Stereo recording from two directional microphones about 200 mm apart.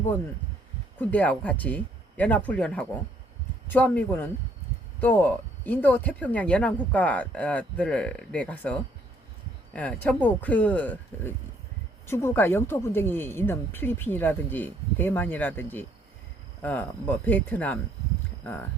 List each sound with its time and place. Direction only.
0.9 s speech: 10° left (ahead or behind)